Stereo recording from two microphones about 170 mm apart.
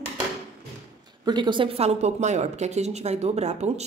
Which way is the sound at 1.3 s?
25° right (ahead or behind).